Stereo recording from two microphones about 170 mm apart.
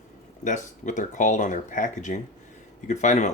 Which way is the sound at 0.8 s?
45° left (ahead or behind).